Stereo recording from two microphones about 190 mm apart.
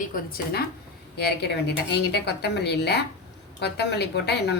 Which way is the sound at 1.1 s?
60° left (ahead or behind).